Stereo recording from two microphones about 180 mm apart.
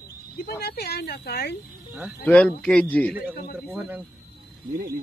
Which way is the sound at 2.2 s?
5° left (ahead or behind).